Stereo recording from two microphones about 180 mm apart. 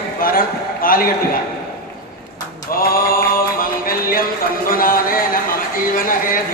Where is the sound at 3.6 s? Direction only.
55° left (ahead or behind).